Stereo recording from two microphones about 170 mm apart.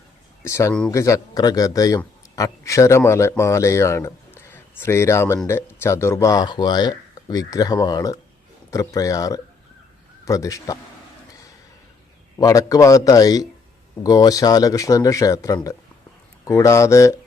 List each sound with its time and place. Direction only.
0.4 s speech: 15° left (ahead or behind)
12.4 s speech: 20° left (ahead or behind)